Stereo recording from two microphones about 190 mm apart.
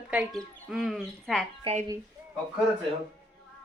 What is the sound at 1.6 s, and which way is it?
Speech, 30° right (ahead or behind).